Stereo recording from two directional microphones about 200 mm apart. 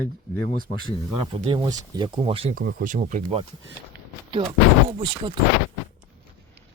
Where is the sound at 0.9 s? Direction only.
25° right (ahead or behind).